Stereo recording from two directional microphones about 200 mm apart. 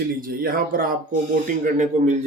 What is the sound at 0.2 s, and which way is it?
Speech, 45° right (ahead or behind).